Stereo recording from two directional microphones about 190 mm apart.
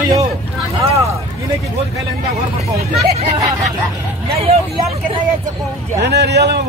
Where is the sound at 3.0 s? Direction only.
35° right (ahead or behind).